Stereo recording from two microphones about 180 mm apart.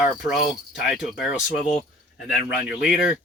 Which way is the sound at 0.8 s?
Centre (ahead or behind).